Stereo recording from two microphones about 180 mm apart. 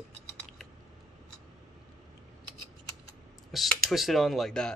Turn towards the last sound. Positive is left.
turn(degrees=5)  # may be behind; listen again after turning